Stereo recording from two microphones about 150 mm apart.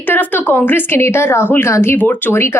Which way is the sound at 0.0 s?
10° left (ahead or behind).